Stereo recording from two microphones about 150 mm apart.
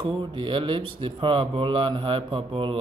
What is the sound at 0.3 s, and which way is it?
Speech, 35° right (ahead or behind).